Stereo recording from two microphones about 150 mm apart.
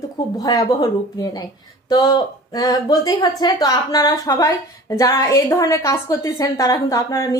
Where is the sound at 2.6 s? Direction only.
25° left (ahead or behind).